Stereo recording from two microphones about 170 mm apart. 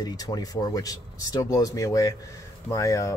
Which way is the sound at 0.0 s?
20° left (ahead or behind).